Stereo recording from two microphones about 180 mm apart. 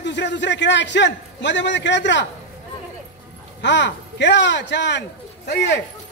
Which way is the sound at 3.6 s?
80° left.